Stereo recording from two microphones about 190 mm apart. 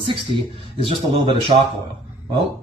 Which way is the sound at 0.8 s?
25° right (ahead or behind).